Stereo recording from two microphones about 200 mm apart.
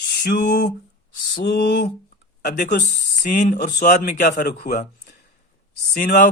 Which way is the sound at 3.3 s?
40° left (ahead or behind).